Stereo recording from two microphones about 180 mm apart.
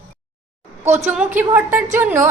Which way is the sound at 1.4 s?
10° right (ahead or behind).